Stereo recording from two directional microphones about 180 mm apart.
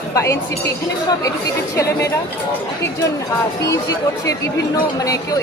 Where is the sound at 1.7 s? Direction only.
15° left (ahead or behind).